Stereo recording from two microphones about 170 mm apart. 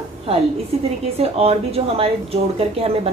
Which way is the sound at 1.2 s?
35° right (ahead or behind).